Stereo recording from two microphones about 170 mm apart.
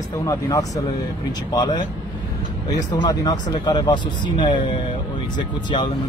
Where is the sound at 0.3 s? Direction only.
20° left (ahead or behind).